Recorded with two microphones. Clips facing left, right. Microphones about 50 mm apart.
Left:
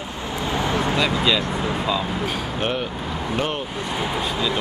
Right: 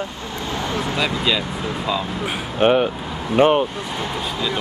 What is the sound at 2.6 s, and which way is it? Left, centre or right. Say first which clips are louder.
Speech: right 12 dB; right.